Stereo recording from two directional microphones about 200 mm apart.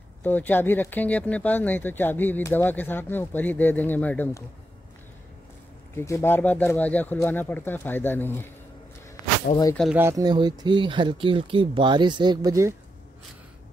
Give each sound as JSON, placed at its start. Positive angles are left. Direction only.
{"t": 0.2, "sound": "speech", "side_deg": 10}
{"t": 5.9, "sound": "speech", "side_deg": 15}
{"t": 9.5, "sound": "speech", "side_deg": 30}
{"t": 9.9, "sound": "speech", "side_deg": -15}